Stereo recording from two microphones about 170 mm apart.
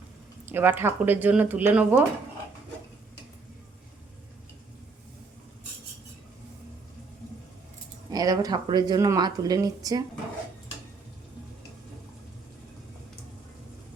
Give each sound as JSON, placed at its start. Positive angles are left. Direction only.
{"t": 0.4, "sound": "speech", "side_deg": -10}
{"t": 8.1, "sound": "speech", "side_deg": -20}